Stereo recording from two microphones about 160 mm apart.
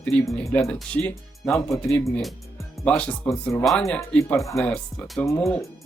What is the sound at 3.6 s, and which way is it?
Speech, 5° left (ahead or behind).